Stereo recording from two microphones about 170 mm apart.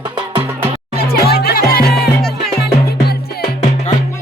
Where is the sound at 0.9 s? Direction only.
65° left (ahead or behind).